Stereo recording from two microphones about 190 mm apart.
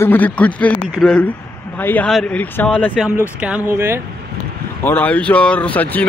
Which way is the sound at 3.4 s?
10° right (ahead or behind).